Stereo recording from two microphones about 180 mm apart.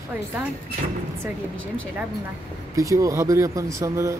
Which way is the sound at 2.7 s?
20° right (ahead or behind).